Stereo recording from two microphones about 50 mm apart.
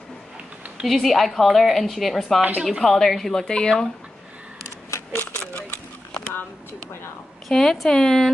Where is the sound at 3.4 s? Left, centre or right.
Centre.